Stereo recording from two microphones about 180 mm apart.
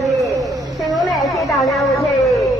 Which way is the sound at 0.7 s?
Centre (ahead or behind).